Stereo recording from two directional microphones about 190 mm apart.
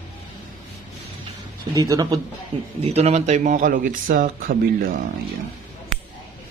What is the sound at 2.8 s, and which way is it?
Speech, 35° right (ahead or behind).